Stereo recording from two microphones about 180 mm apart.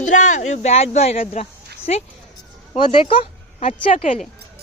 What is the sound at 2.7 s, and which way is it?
Speech, 30° left (ahead or behind).